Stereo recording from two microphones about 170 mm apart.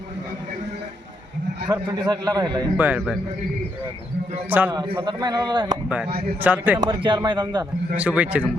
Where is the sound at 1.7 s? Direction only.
20° right (ahead or behind).